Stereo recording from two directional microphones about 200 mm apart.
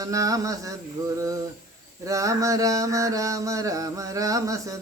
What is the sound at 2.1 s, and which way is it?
Mantra, 15° right (ahead or behind).